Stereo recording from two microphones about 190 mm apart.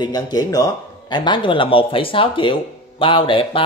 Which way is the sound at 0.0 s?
20° left (ahead or behind).